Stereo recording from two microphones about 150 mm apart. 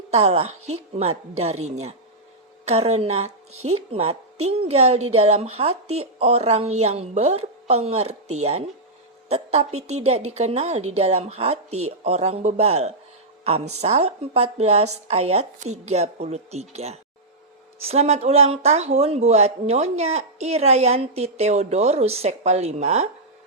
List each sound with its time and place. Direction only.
0.1 s speech: 45° right (ahead or behind)